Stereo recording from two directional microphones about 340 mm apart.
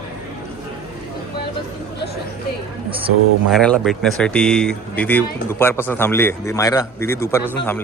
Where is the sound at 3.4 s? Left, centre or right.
Centre.